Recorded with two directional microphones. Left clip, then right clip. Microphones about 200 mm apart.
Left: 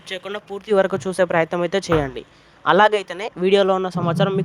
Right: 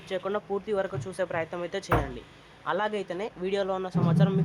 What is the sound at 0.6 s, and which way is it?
Speech, 50° left (ahead or behind).